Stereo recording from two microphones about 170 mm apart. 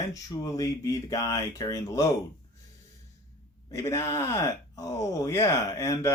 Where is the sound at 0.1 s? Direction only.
20° left (ahead or behind).